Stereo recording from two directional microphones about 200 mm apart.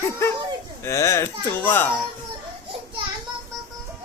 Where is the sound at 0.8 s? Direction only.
15° left (ahead or behind).